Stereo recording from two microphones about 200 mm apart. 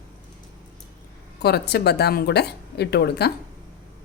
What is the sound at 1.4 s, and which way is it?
Speech, 55° left (ahead or behind).